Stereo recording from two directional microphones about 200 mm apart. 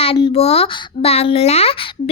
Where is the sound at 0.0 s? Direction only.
25° left (ahead or behind).